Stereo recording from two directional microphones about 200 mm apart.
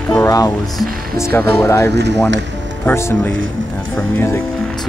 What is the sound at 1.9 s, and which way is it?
Speech, 55° right (ahead or behind).